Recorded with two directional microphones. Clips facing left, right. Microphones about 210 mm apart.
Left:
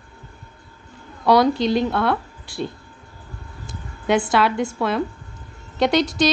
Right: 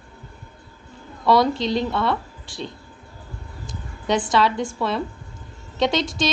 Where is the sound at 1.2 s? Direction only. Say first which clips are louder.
Left 2 dB; centre (ahead or behind).